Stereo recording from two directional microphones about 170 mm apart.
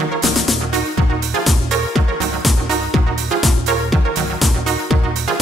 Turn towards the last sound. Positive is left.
turn(degrees=0)  # may be behind; listen again after turning